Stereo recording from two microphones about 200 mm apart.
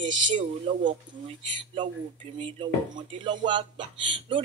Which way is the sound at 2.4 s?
25° right (ahead or behind).